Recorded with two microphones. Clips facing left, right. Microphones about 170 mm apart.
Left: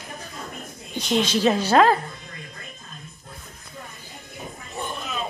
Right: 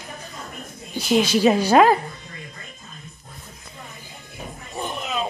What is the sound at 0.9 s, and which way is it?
Speech, 5° right (ahead or behind).